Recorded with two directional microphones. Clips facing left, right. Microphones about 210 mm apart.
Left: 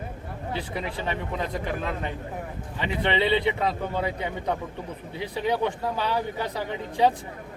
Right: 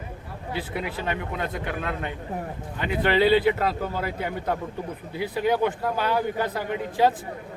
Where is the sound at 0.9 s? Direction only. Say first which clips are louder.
Right 1 dB; 30° left (ahead or behind).